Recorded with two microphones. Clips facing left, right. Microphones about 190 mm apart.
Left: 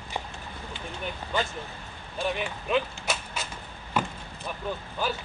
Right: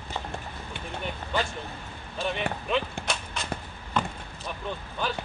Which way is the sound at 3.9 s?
5° left (ahead or behind).